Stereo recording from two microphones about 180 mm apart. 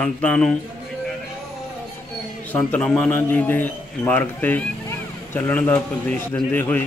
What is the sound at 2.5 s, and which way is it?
A man's voice, 10° left (ahead or behind).